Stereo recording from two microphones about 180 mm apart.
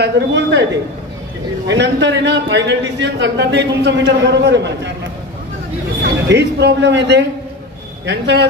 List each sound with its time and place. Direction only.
0.0 s a man's voice: 70° right (ahead or behind)
1.7 s a man's voice: 80° right
6.0 s a man's voice: 70° right (ahead or behind)